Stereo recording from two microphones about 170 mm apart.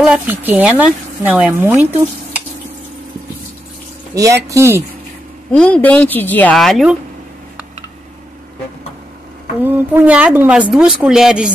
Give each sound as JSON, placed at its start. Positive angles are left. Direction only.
{"t": 0.0, "sound": "speech", "side_deg": -10}
{"t": 4.1, "sound": "speech", "side_deg": -20}
{"t": 5.5, "sound": "a woman's voice", "side_deg": 5}
{"t": 9.6, "sound": "speech", "side_deg": -10}